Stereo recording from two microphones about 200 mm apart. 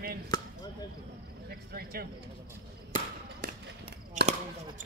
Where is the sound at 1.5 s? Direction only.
50° right (ahead or behind).